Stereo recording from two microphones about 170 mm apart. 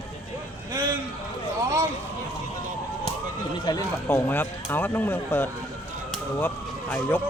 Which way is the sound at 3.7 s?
25° left (ahead or behind).